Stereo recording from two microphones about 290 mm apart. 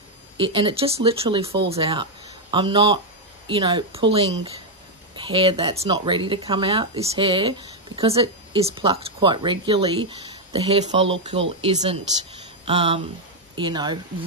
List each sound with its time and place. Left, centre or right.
0.4 s speech: centre